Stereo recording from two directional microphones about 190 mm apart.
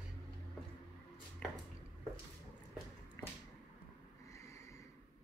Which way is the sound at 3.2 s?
20° left (ahead or behind).